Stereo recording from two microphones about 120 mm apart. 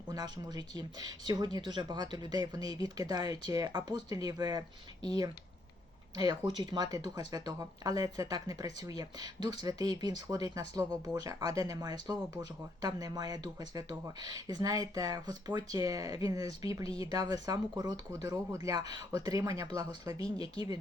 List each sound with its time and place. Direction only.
0.1 s speech: 35° right (ahead or behind)